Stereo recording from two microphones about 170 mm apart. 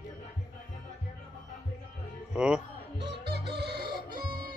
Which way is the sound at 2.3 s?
5° right (ahead or behind).